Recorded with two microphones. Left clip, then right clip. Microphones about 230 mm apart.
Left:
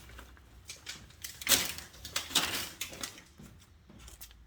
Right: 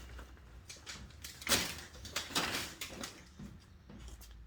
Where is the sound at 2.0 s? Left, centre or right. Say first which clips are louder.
Left 5 dB; left.